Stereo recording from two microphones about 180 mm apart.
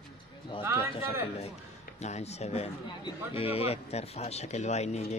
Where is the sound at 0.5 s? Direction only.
30° left (ahead or behind).